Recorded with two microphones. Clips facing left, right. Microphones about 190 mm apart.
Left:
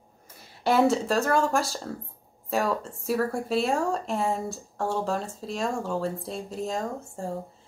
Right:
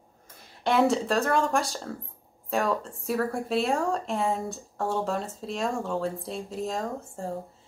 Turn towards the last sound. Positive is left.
turn(degrees=0)  # may be behind; listen again after turning